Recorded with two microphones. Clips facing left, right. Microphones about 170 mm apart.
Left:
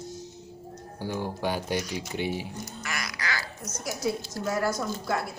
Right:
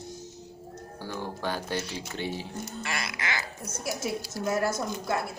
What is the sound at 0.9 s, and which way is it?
Speech, 15° left (ahead or behind).